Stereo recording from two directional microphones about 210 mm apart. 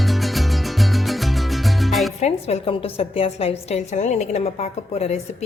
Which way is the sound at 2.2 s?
30° left (ahead or behind).